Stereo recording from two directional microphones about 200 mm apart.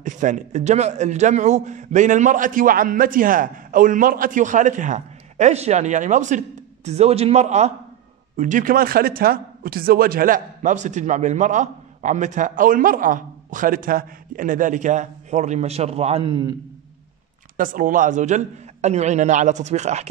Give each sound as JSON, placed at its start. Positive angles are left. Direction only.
{"t": 0.0, "sound": "speech", "side_deg": -40}
{"t": 17.6, "sound": "speech", "side_deg": -40}